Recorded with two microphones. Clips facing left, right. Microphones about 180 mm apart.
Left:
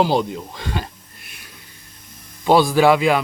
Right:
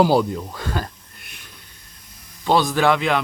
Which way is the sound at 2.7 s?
5° left (ahead or behind).